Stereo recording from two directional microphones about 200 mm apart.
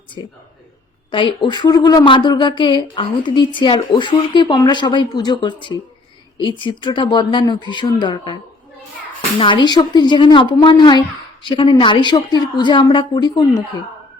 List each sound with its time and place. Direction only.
1.1 s speech: 25° left (ahead or behind)
9.4 s speech: 25° left (ahead or behind)